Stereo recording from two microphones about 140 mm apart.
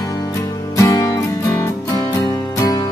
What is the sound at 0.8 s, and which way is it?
Music, 20° left (ahead or behind).